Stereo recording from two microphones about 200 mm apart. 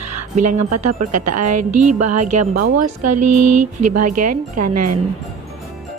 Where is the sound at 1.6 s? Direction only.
40° right (ahead or behind).